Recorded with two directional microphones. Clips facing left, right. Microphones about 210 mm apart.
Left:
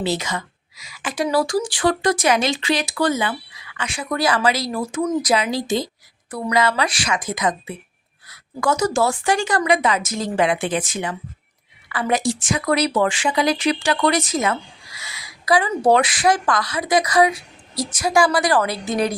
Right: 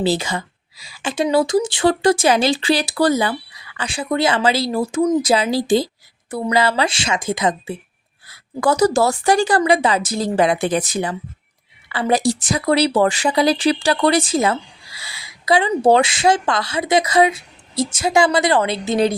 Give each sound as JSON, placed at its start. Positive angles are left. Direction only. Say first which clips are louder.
{"t": 0.0, "sound": "speech", "louder": "right 4 dB", "side_deg": -30}